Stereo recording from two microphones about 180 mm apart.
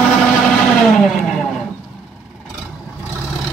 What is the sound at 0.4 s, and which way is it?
Vehicle, centre (ahead or behind).